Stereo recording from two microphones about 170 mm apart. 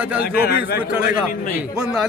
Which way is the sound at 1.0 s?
55° left (ahead or behind).